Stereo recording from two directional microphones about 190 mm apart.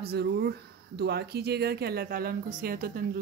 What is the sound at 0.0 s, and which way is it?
Speech, 55° right (ahead or behind).